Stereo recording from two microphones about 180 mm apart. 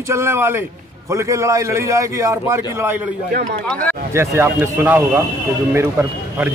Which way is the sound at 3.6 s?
5° left (ahead or behind).